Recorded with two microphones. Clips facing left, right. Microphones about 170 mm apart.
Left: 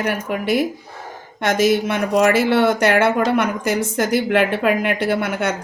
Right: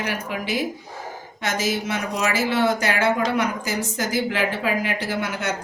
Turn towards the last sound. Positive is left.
turn(degrees=60)  # may be behind; listen again after turning